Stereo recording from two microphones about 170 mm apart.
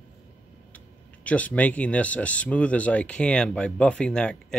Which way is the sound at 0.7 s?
10° left (ahead or behind).